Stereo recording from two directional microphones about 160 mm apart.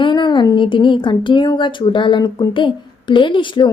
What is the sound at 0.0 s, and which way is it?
Speech, 30° left (ahead or behind).